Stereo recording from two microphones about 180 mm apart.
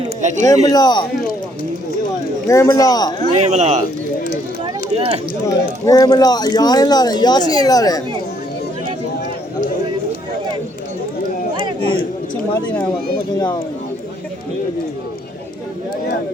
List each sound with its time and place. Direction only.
0.2 s speech: 40° right (ahead or behind)
0.4 s speech: 20° left (ahead or behind)
2.5 s speech: 20° left (ahead or behind)
3.3 s speech: 40° right (ahead or behind)
4.9 s a sound: 35° right (ahead or behind)
5.8 s speech: 20° left (ahead or behind)
11.6 s a sound: 35° right (ahead or behind)